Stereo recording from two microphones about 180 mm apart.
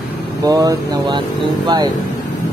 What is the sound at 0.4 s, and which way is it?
Speech, 20° right (ahead or behind).